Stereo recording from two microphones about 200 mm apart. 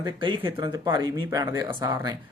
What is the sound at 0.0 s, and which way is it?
Speech, 25° right (ahead or behind).